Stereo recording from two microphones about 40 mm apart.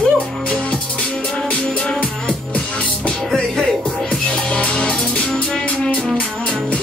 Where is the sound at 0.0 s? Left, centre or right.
Left.